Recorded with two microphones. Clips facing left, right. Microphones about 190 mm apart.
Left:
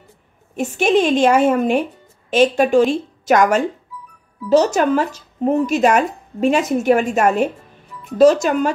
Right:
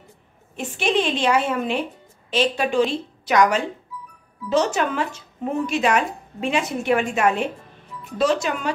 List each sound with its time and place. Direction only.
0.6 s speech: 45° left (ahead or behind)